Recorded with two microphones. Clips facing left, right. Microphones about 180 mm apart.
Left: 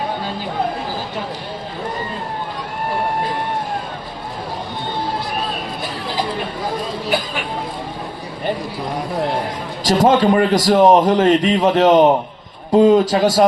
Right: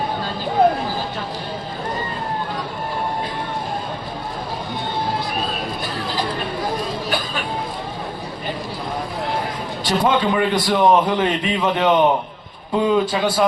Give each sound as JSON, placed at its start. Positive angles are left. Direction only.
{"t": 9.8, "sound": "a man's voice", "side_deg": 40}